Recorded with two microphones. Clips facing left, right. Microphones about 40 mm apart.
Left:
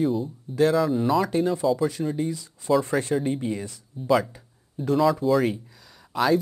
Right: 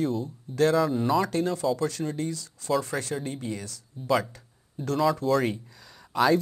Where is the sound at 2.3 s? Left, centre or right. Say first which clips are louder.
Left 5 dB; centre.